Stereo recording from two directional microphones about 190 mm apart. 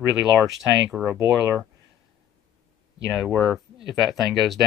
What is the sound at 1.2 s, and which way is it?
Speech, 15° right (ahead or behind).